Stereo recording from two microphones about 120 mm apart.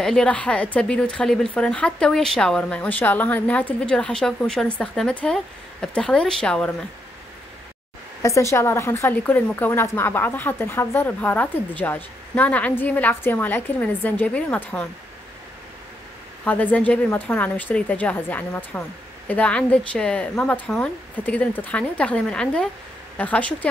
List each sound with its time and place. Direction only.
0.0 s a woman's voice: 5° left (ahead or behind)
8.2 s a woman's voice: 25° left (ahead or behind)
16.4 s a woman's voice: 15° left (ahead or behind)